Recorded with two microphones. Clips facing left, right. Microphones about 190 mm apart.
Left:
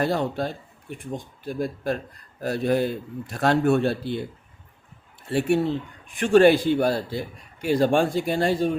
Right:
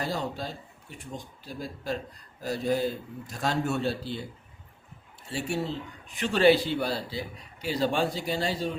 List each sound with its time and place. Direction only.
0.0 s speech: 60° left (ahead or behind)
5.3 s speech: 60° left (ahead or behind)